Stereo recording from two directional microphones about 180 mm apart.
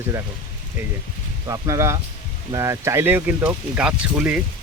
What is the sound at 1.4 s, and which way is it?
Speech, 20° right (ahead or behind).